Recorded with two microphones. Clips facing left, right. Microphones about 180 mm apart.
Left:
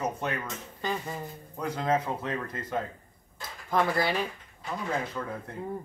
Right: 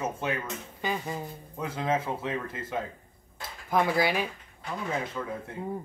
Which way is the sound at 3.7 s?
10° right (ahead or behind).